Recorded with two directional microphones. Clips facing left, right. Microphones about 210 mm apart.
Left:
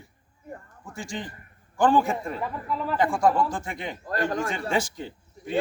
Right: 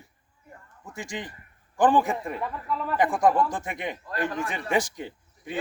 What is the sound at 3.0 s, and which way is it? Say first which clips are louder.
Speech: right 1 dB; 20° right (ahead or behind).